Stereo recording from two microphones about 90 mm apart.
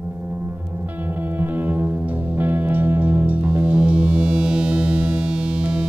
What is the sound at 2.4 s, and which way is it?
Music, 20° right (ahead or behind).